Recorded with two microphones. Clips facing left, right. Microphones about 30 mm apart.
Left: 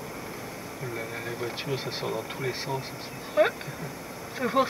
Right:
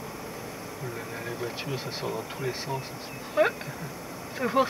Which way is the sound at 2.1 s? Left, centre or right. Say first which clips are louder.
Even; centre.